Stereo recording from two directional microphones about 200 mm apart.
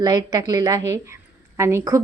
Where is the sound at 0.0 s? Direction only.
20° right (ahead or behind).